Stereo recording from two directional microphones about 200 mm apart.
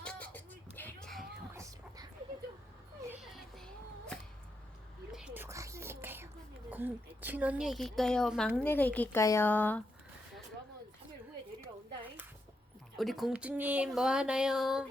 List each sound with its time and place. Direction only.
0.0 s a sound: 5° left (ahead or behind)
1.5 s whispering: 15° right (ahead or behind)
3.0 s a sound: 5° right (ahead or behind)
5.1 s whispering: 5° right (ahead or behind)
6.7 s a woman's voice: 10° right (ahead or behind); by 9.8 s 10° left (ahead or behind)
13.0 s a woman's voice: centre (ahead or behind)